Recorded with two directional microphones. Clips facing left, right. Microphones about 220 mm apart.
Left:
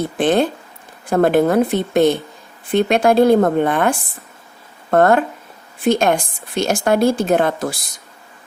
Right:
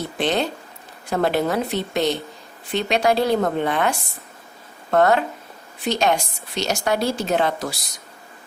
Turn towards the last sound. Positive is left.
turn(degrees=50)  # may be behind; listen again after turning